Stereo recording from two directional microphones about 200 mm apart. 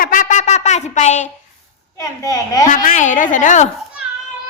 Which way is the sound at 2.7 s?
40° left (ahead or behind).